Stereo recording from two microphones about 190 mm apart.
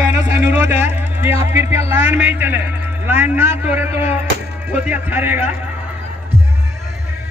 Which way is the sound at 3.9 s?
35° left (ahead or behind).